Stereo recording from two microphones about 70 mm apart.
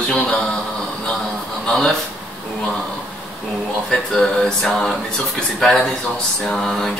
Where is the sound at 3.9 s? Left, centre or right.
Centre.